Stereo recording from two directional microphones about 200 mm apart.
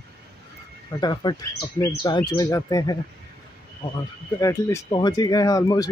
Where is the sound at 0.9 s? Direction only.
20° left (ahead or behind).